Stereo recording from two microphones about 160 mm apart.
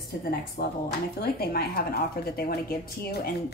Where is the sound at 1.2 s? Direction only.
75° left (ahead or behind).